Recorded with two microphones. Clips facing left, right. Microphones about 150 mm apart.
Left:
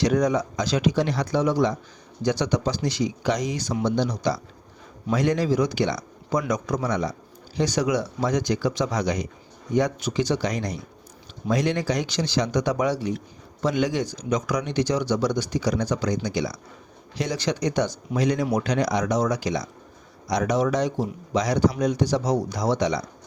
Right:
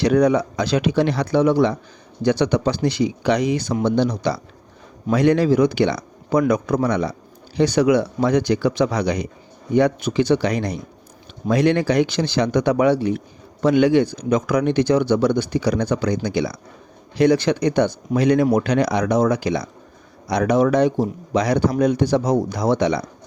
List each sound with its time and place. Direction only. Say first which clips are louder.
0.0 s speech: right 5 dB; 65° right (ahead or behind)